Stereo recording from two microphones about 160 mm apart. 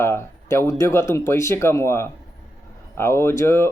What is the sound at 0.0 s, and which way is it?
Speech, 15° left (ahead or behind).